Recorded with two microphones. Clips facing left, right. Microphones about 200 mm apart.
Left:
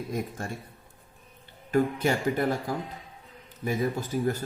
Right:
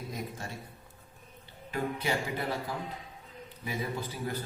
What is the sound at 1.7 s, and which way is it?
A man's voice, 45° left (ahead or behind).